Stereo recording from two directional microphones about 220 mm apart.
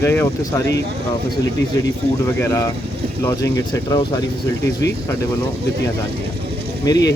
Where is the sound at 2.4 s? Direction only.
15° left (ahead or behind).